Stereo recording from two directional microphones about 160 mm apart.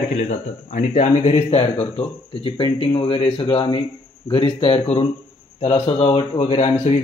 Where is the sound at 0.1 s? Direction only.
45° left (ahead or behind).